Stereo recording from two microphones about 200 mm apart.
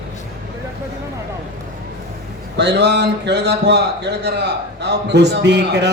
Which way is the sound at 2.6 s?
60° right (ahead or behind).